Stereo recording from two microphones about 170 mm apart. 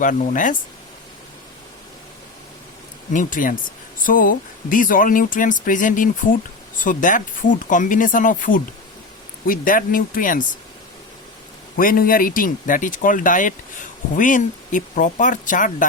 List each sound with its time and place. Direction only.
0.0 s speech: 50° left (ahead or behind)
3.1 s speech: 50° left (ahead or behind)
11.8 s speech: 55° left (ahead or behind)